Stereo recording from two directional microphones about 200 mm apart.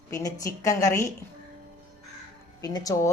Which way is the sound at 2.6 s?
20° left (ahead or behind).